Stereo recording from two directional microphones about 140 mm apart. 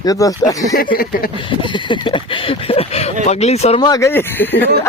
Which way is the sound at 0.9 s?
90° left.